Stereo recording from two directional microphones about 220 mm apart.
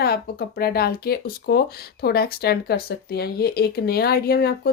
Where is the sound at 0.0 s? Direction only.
45° left (ahead or behind).